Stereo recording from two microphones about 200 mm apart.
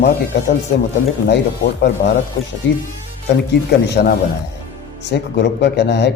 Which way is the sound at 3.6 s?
55° left (ahead or behind).